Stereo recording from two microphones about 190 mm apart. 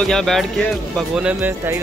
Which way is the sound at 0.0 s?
Centre (ahead or behind).